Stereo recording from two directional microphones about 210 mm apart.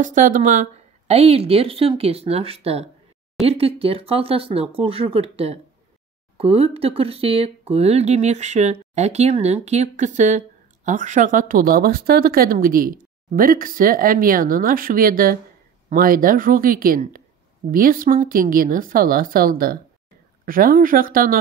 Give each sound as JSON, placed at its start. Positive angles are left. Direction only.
{"t": 0.0, "sound": "a woman's voice", "side_deg": -40}